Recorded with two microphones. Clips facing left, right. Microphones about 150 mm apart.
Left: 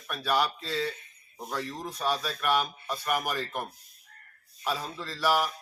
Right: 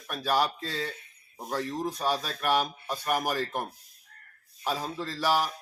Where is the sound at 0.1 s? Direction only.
40° right (ahead or behind).